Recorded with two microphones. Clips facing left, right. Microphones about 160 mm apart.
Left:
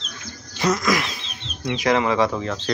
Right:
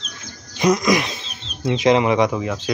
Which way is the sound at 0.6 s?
15° right (ahead or behind).